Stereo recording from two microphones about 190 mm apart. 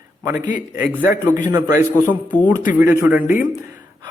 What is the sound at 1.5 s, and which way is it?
A man's voice, 15° right (ahead or behind).